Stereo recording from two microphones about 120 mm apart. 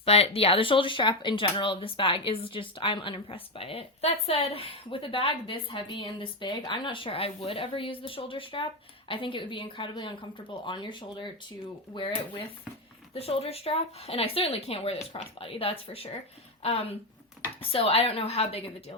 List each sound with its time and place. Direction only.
0.0 s a woman's voice: 55° left (ahead or behind)
13.1 s a woman's voice: 55° left (ahead or behind)